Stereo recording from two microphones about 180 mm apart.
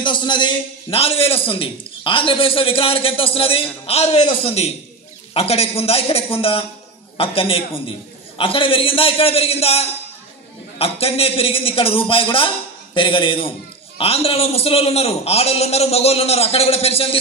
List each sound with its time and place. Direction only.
0.0 s a man's voice: 25° left (ahead or behind)